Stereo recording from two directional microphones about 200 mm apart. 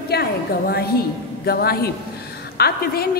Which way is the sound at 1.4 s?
50° left (ahead or behind).